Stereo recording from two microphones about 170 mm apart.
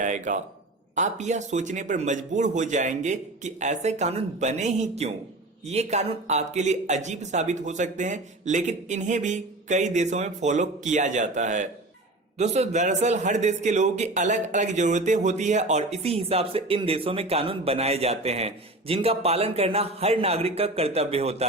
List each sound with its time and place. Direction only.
0.0 s a man's voice: 45° right (ahead or behind)